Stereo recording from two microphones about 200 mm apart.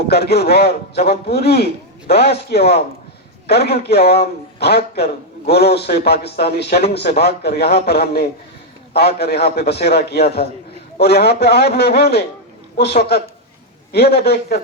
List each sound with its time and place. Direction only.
0.1 s a man's voice: 55° left (ahead or behind)